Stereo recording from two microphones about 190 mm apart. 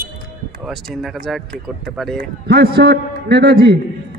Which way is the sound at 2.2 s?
55° right (ahead or behind).